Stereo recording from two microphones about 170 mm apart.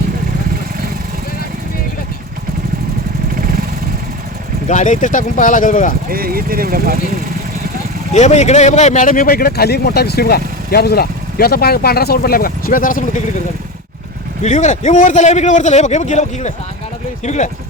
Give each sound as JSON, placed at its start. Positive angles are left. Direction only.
{"t": 4.7, "sound": "a man's voice", "side_deg": 45}
{"t": 6.1, "sound": "speech", "side_deg": -60}
{"t": 8.1, "sound": "speech", "side_deg": 40}
{"t": 14.4, "sound": "a man's voice", "side_deg": 45}